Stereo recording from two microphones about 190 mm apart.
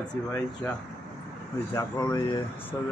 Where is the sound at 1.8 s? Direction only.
20° left (ahead or behind).